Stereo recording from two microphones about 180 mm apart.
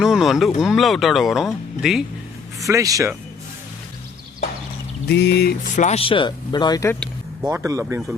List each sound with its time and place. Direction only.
0.0 s speech: centre (ahead or behind)
2.6 s speech: 15° right (ahead or behind)
5.0 s speech: 70° left (ahead or behind)
5.7 s speech: 40° left (ahead or behind); by 6.9 s 20° left (ahead or behind)
7.4 s speech: 15° right (ahead or behind)